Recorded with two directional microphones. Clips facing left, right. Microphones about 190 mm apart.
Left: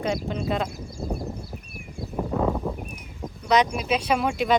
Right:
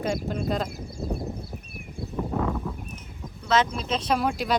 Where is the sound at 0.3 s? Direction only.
Centre (ahead or behind).